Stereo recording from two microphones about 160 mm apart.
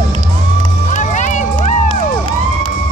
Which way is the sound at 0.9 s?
50° left (ahead or behind).